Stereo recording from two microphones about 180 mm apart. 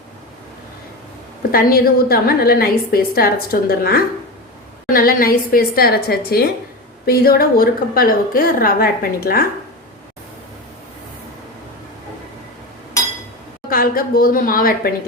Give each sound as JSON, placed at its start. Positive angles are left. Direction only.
{"t": 1.4, "sound": "a woman's voice", "side_deg": 55}
{"t": 13.7, "sound": "a woman's voice", "side_deg": 55}